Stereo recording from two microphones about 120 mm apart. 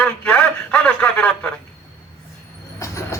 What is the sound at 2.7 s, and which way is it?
Train, 25° left (ahead or behind).